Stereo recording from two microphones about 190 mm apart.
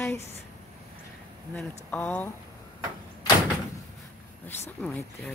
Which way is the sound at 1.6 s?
5° left (ahead or behind).